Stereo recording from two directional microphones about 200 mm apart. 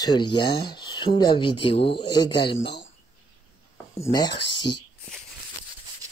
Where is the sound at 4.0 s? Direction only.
20° left (ahead or behind).